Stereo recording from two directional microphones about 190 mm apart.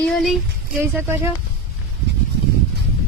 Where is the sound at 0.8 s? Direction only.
15° right (ahead or behind).